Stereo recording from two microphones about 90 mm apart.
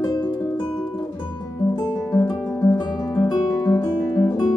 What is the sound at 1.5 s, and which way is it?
Music, 40° left (ahead or behind).